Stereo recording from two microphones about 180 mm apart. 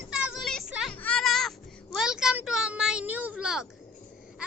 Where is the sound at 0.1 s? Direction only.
5° right (ahead or behind).